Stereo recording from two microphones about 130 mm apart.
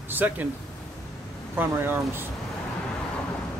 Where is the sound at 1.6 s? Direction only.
15° right (ahead or behind).